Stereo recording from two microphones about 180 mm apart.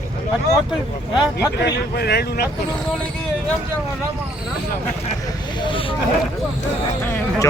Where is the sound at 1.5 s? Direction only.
65° left (ahead or behind).